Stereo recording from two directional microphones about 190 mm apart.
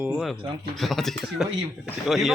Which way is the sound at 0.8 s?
Centre (ahead or behind).